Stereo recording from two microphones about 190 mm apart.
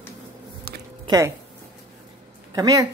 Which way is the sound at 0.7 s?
50° right (ahead or behind).